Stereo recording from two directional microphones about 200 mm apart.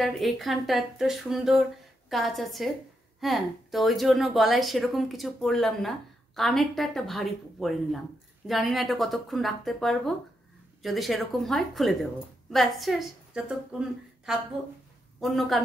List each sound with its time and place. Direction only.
0.0 s a woman's voice: centre (ahead or behind)